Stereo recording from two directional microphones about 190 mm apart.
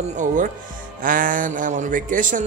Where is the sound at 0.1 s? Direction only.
40° right (ahead or behind).